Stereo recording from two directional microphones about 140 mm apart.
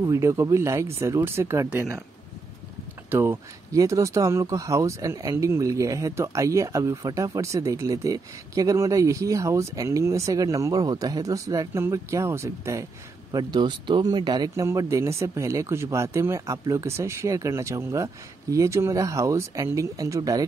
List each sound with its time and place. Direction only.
0.0 s speech: 20° right (ahead or behind)
3.1 s speech: 20° right (ahead or behind)
13.3 s speech: 30° right (ahead or behind)
14.7 s speech: 20° right (ahead or behind)